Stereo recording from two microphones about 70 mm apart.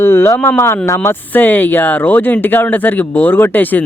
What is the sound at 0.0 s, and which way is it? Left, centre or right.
Speech, left.